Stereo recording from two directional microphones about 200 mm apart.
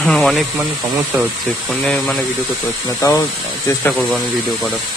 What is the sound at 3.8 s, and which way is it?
Speech, 5° left (ahead or behind).